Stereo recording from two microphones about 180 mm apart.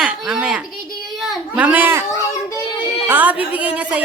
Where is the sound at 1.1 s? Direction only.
Centre (ahead or behind).